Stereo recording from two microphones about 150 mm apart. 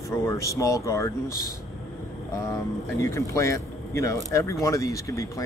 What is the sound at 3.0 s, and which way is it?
Speech, 20° left (ahead or behind).